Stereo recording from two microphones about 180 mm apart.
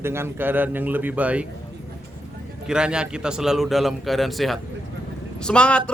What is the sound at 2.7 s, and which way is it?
A man's voice, 5° right (ahead or behind).